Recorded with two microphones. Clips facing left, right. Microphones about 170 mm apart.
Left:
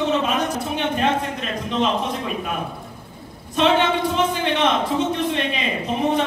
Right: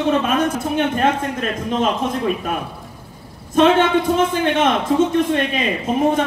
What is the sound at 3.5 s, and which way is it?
A man's voice, 45° right (ahead or behind).